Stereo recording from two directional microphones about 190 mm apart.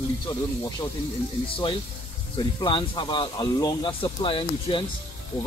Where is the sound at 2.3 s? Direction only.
25° left (ahead or behind).